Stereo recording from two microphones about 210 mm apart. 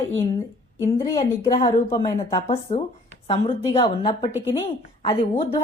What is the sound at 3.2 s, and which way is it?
A woman's voice, 30° left (ahead or behind).